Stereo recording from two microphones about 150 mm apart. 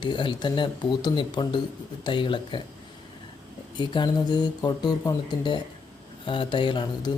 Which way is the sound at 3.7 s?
30° left (ahead or behind).